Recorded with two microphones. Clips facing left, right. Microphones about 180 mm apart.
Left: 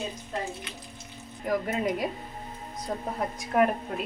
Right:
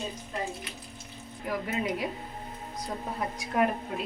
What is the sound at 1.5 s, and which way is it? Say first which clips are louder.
Speech: left 4 dB; 45° left (ahead or behind).